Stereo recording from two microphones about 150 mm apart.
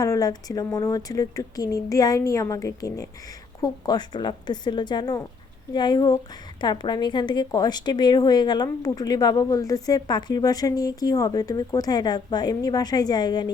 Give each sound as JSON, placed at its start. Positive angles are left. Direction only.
{"t": 0.0, "sound": "a woman's voice", "side_deg": 25}